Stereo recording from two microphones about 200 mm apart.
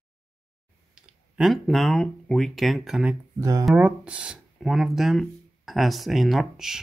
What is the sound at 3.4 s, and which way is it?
Speech, 15° right (ahead or behind).